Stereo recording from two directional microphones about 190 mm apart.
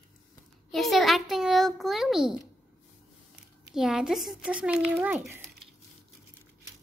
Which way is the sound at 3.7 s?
5° right (ahead or behind).